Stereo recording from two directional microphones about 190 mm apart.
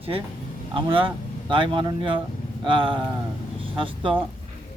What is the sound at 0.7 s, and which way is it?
A man's voice, 25° right (ahead or behind).